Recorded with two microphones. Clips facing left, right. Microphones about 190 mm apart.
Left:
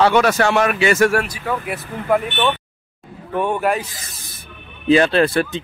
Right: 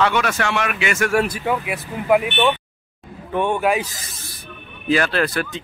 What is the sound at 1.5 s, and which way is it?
Speech, 20° right (ahead or behind).